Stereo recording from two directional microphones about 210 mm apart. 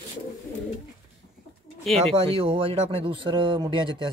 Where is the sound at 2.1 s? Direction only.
25° right (ahead or behind).